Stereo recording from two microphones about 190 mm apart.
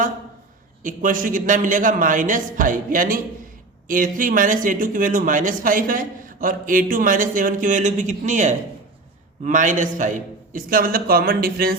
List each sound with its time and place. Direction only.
0.8 s speech: 45° right (ahead or behind)